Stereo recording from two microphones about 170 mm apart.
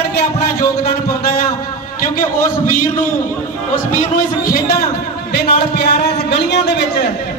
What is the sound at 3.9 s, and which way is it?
Speech, 50° left (ahead or behind).